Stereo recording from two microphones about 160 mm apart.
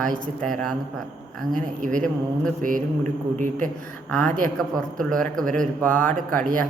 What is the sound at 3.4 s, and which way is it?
Speech, 55° right (ahead or behind).